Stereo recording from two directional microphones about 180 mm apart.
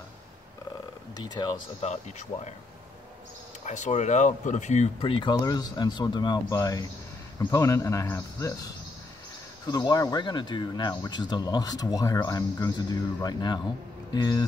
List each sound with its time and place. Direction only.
1.1 s speech: 25° left (ahead or behind)
1.8 s speech: 40° left (ahead or behind)
3.6 s speech: 40° left (ahead or behind); by 8.5 s 15° left (ahead or behind)
9.7 s speech: 20° left (ahead or behind)